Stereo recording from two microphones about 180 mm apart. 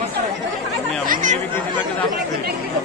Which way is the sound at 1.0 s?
45° right (ahead or behind).